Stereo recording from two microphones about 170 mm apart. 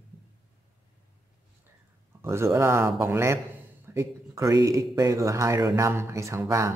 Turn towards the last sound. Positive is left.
turn(degrees=-15)  # may be behind; listen again after turning